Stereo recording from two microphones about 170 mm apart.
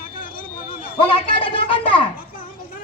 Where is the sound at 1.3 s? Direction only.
30° left (ahead or behind).